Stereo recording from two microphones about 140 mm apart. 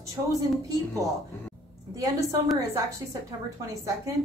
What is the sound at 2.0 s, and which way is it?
Speech, 25° right (ahead or behind).